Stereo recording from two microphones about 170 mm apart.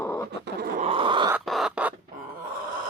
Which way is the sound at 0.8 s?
30° right (ahead or behind).